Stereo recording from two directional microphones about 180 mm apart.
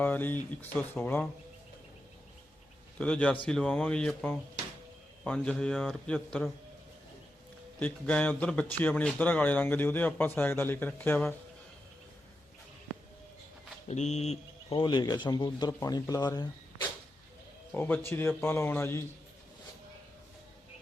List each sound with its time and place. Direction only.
0.0 s a man's voice: 10° left (ahead or behind)
3.0 s a man's voice: 5° left (ahead or behind)
7.8 s a man's voice: 10° left (ahead or behind)
13.8 s speech: 40° left (ahead or behind)
14.8 s speech: 25° left (ahead or behind)
17.7 s a man's voice: 10° left (ahead or behind)